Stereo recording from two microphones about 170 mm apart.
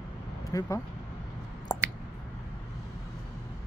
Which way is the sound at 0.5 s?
20° left (ahead or behind).